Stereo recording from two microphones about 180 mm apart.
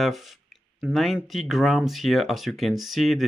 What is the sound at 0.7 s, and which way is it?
Speech, centre (ahead or behind).